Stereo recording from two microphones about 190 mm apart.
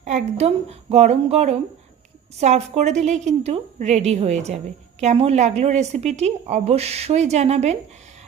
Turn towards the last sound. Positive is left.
turn(degrees=-35)  # may be behind; listen again after turning